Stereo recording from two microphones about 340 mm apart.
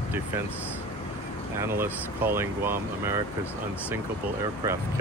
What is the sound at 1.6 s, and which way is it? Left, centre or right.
Speech, centre.